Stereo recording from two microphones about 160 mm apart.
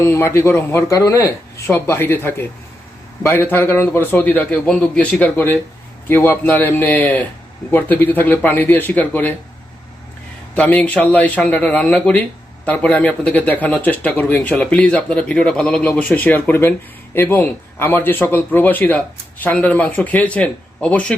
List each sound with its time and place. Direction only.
0.0 s speech: 15° left (ahead or behind)
10.5 s speech: 10° left (ahead or behind)